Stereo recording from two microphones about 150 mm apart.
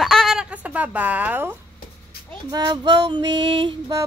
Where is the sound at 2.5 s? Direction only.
25° right (ahead or behind).